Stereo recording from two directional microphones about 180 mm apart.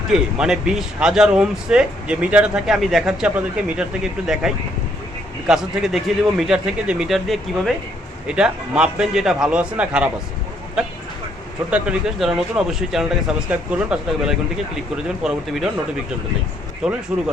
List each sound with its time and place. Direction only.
0.1 s speech: 5° right (ahead or behind)
11.7 s speech: 5° right (ahead or behind)
16.8 s speech: 5° right (ahead or behind)